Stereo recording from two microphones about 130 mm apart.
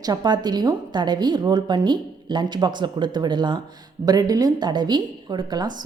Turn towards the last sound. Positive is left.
turn(degrees=-35)  # may be behind; listen again after turning